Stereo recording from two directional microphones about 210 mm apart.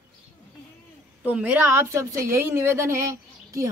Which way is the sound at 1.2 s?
10° right (ahead or behind).